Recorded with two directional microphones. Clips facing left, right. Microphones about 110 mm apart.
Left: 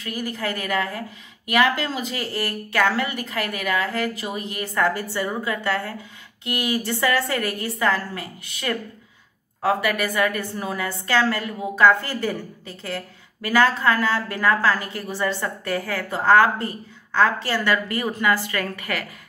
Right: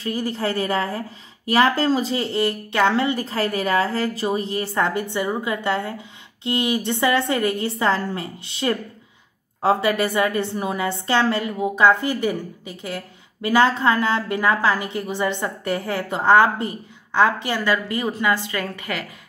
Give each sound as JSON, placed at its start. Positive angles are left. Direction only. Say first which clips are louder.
{"t": 0.0, "sound": "a woman's voice", "louder": "right 4 dB", "side_deg": -30}